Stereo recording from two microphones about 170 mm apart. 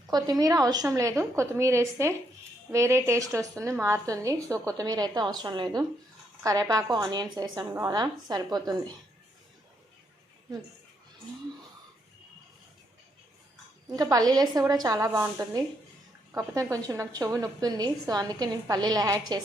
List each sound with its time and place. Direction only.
0.1 s a woman's voice: 20° right (ahead or behind)
13.9 s a woman's voice: 20° right (ahead or behind)